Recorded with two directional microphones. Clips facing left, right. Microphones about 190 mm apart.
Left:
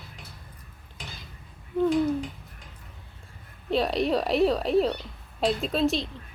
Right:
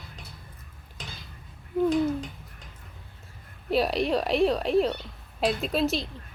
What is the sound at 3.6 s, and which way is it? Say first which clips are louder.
A woman's voice: even; 5° right (ahead or behind).